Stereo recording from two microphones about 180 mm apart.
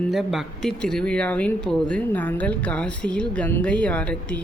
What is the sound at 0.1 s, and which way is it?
Speech, centre (ahead or behind).